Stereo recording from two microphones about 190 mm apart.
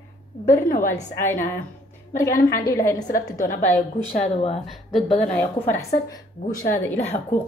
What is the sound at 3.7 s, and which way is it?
Speech, 35° left (ahead or behind).